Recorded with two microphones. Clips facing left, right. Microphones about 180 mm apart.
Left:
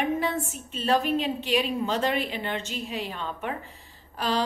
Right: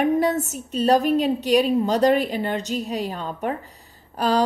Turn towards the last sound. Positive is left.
turn(degrees=-40)  # may be behind; listen again after turning